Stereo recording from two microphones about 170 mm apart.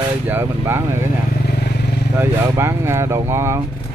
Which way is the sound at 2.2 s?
15° right (ahead or behind).